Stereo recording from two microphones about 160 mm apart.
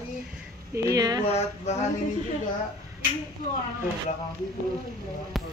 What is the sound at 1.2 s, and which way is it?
Speech, 45° left (ahead or behind).